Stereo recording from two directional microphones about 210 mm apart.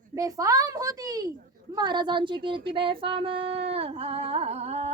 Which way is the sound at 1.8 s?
20° right (ahead or behind).